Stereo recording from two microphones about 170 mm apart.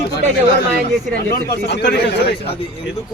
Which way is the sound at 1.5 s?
75° left (ahead or behind).